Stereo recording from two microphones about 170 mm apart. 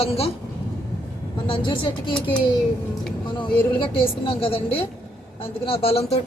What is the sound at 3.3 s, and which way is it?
Speech, 30° left (ahead or behind).